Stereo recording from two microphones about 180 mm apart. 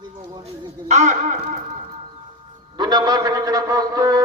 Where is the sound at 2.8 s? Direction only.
25° right (ahead or behind).